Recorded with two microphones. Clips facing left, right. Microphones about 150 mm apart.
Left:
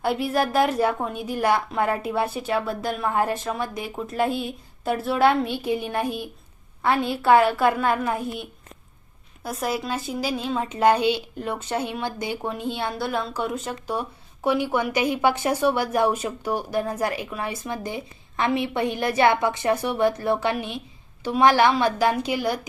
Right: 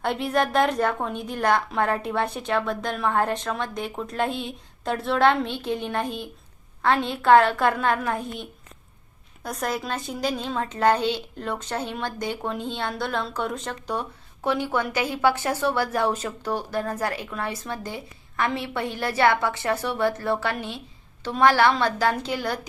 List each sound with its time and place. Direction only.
0.0 s a woman's voice: 5° left (ahead or behind)